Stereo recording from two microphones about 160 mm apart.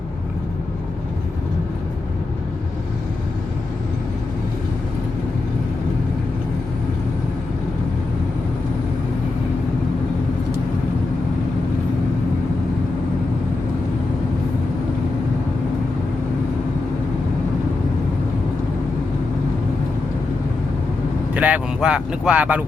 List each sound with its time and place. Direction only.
21.3 s speech: 10° right (ahead or behind)